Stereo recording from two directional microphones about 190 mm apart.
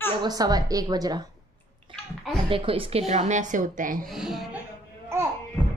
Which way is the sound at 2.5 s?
30° right (ahead or behind).